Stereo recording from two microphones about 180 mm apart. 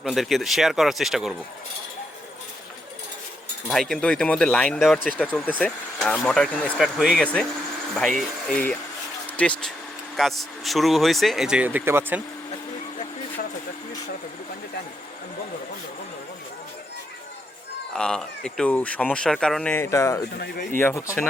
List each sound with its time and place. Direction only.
0.0 s speech: centre (ahead or behind)
3.7 s speech: centre (ahead or behind)
17.9 s speech: 5° left (ahead or behind)